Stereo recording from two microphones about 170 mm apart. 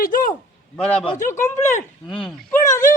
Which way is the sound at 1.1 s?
50° left (ahead or behind).